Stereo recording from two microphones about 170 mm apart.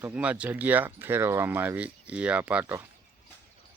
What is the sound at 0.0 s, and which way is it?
Speech, 5° right (ahead or behind).